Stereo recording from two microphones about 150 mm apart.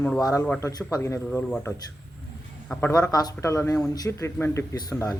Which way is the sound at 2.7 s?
10° left (ahead or behind).